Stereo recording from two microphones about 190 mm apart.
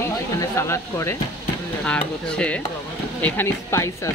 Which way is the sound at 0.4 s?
15° left (ahead or behind).